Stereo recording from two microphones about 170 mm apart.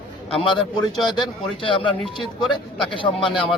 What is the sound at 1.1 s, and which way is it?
Speech, 30° left (ahead or behind).